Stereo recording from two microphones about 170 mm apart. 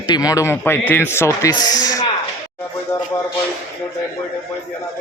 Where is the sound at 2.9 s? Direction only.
15° left (ahead or behind).